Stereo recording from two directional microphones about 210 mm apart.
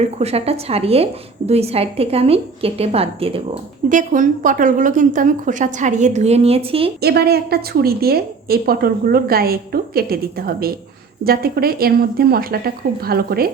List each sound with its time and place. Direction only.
0.2 s a woman's voice: 30° right (ahead or behind)
3.8 s a woman's voice: 40° right (ahead or behind)
7.0 s a woman's voice: 50° right (ahead or behind)